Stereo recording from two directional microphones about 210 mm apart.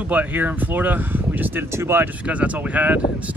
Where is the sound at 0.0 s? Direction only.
5° right (ahead or behind).